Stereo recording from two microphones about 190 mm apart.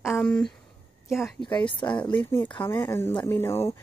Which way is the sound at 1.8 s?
15° left (ahead or behind).